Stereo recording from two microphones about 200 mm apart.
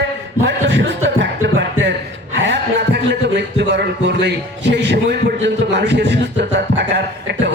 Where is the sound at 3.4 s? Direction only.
60° right (ahead or behind).